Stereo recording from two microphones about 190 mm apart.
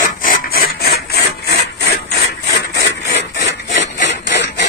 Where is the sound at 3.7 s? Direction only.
70° left (ahead or behind).